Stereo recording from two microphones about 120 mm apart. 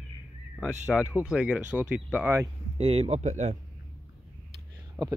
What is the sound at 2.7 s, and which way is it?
Speech, 60° right (ahead or behind).